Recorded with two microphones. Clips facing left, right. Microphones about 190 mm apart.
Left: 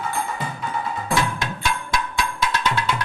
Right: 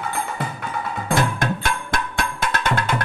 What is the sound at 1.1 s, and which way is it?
Music, 55° right (ahead or behind).